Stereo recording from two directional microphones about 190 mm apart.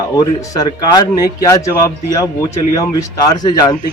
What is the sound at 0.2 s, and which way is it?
A man's voice, 20° left (ahead or behind).